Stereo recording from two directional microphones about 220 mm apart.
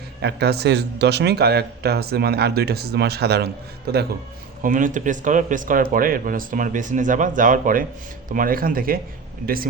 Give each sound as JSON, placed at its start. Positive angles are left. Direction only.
{"t": 0.2, "sound": "speech", "side_deg": -50}
{"t": 4.6, "sound": "speech", "side_deg": -35}